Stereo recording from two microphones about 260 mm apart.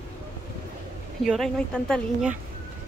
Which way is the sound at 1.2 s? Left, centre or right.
Centre.